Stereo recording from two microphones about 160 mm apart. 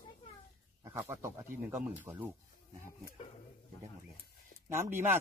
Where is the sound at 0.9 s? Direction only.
15° right (ahead or behind).